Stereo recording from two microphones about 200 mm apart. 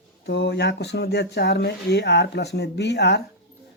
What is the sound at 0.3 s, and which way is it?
Speech, 55° left (ahead or behind).